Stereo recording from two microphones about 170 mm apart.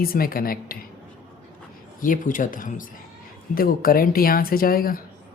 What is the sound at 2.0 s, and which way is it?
Speech, 50° left (ahead or behind).